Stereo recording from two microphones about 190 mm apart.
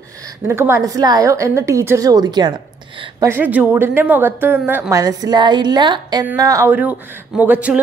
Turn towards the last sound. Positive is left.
turn(degrees=-10)  # may be behind; listen again after turning